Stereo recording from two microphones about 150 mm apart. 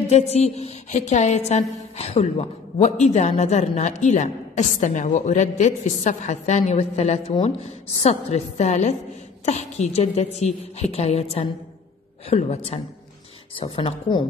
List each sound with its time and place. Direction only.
0.1 s a woman's voice: 45° left (ahead or behind)